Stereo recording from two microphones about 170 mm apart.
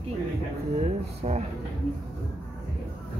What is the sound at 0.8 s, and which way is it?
Speech, 40° right (ahead or behind).